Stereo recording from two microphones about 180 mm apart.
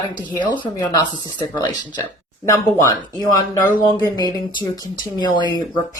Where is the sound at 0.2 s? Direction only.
25° left (ahead or behind).